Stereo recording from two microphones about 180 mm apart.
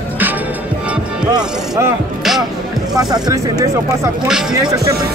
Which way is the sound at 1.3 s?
20° right (ahead or behind).